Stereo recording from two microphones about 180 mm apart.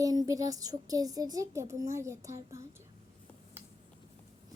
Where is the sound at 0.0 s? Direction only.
20° right (ahead or behind).